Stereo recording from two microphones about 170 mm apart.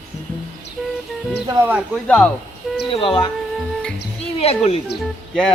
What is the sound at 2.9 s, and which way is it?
Speech, 30° left (ahead or behind).